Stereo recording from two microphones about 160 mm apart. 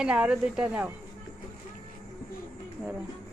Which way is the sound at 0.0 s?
5° right (ahead or behind).